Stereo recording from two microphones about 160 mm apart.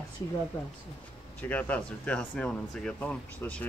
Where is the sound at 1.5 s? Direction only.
10° left (ahead or behind).